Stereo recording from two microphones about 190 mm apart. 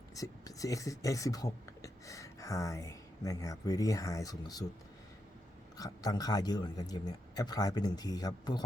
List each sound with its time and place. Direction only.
0.2 s speech: 20° left (ahead or behind)
5.7 s speech: 20° left (ahead or behind)